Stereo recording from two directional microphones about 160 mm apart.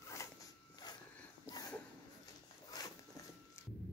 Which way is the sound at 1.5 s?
25° left (ahead or behind).